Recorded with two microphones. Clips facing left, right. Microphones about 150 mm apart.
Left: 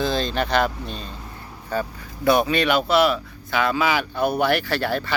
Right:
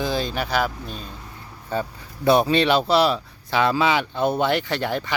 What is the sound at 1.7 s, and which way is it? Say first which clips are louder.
Speech: even; 25° right (ahead or behind).